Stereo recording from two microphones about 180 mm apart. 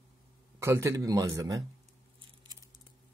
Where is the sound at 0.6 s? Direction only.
15° right (ahead or behind).